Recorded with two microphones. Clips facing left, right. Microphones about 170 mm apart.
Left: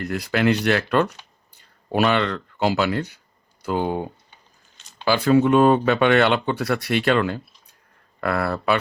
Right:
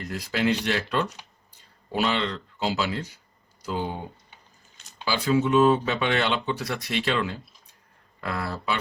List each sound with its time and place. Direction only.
0.0 s speech: 65° left (ahead or behind)